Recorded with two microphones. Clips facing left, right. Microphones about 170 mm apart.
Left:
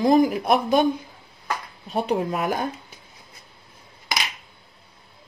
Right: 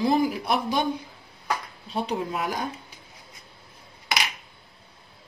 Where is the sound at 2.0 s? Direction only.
50° left (ahead or behind).